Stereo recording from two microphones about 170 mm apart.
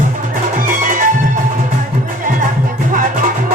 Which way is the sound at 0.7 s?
50° right (ahead or behind).